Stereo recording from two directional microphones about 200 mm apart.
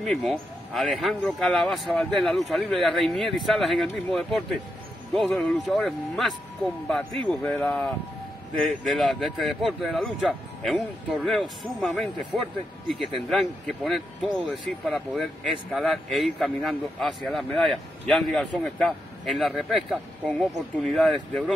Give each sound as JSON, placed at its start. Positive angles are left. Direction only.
{"t": 0.0, "sound": "speech", "side_deg": 0}